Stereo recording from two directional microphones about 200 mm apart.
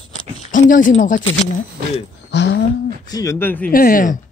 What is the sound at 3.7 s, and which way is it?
Speech, 45° left (ahead or behind).